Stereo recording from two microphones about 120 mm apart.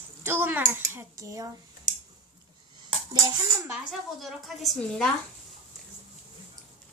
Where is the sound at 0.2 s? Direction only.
20° right (ahead or behind).